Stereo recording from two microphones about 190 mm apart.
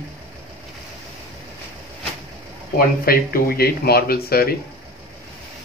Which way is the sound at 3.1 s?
55° left (ahead or behind).